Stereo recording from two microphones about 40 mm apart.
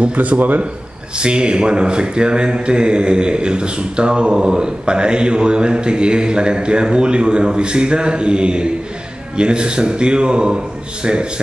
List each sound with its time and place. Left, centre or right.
0.0 s speech: right
1.1 s speech: right